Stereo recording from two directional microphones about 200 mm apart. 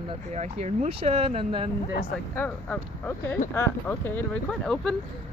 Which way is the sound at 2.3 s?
10° left (ahead or behind).